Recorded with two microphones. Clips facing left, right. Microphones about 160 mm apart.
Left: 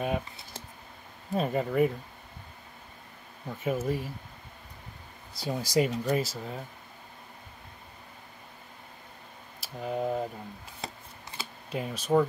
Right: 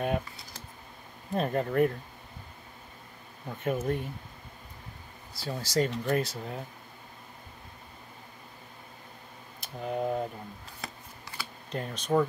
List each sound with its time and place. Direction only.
1.3 s speech: 5° left (ahead or behind)
3.4 s speech: 5° left (ahead or behind)
5.3 s speech: 15° left (ahead or behind); by 6.6 s centre (ahead or behind)
9.6 s speech: centre (ahead or behind)
10.8 s chopping: 20° left (ahead or behind)
11.7 s speech: 5° left (ahead or behind)